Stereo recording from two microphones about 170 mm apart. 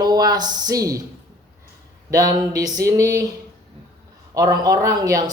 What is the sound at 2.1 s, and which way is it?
Speech, 20° right (ahead or behind).